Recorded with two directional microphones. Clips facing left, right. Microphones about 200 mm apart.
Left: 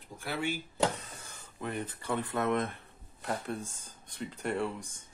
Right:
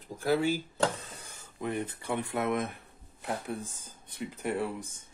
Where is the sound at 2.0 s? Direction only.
15° right (ahead or behind).